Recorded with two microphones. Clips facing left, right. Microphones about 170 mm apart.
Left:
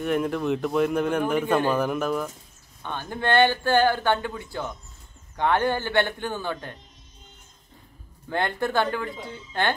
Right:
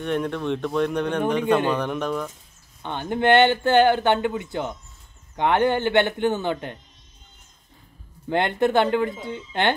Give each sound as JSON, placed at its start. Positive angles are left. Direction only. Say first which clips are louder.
{"t": 0.0, "sound": "speech", "louder": "left 1 dB", "side_deg": 5}
{"t": 2.8, "sound": "speech", "louder": "right 6 dB", "side_deg": -20}
{"t": 8.3, "sound": "speech", "louder": "right 5 dB", "side_deg": -20}